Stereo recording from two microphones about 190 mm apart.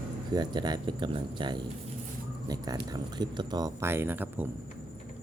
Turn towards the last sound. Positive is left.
turn(degrees=-10)  # may be behind; listen again after turning